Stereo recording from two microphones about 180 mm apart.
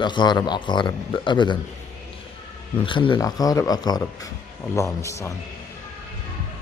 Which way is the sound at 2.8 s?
25° left (ahead or behind).